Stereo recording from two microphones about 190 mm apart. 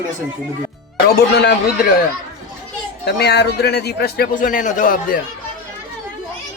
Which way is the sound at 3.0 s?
60° left (ahead or behind).